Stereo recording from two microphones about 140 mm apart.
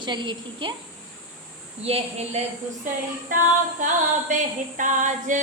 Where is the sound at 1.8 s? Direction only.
50° right (ahead or behind).